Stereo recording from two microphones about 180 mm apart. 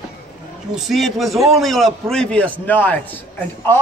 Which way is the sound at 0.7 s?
Centre (ahead or behind).